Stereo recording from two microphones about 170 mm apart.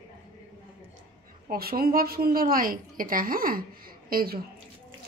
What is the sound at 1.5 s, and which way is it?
A woman's voice, 60° right (ahead or behind).